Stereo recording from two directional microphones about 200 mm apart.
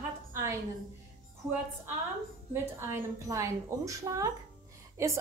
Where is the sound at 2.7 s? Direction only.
15° right (ahead or behind).